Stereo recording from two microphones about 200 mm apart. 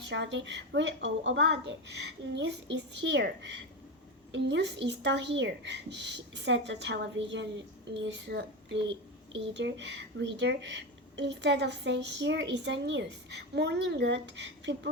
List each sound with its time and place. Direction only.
0.1 s speech: 65° right (ahead or behind)